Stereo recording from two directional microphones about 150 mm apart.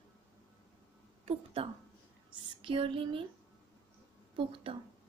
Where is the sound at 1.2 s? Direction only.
40° right (ahead or behind).